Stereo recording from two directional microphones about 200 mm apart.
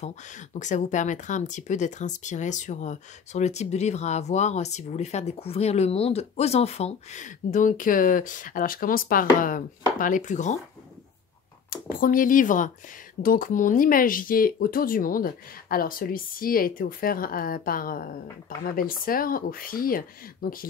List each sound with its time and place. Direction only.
0.0 s speech: 35° left (ahead or behind)
11.7 s speech: 45° left (ahead or behind)